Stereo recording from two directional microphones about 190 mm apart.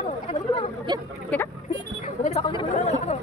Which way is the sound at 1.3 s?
5° left (ahead or behind).